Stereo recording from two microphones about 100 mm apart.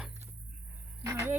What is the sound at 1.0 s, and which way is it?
Speech, 30° right (ahead or behind).